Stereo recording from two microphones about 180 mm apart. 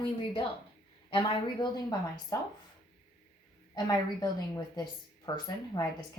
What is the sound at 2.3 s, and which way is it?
Speech, 20° left (ahead or behind).